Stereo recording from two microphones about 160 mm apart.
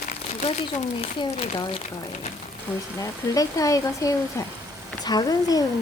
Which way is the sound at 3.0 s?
20° left (ahead or behind).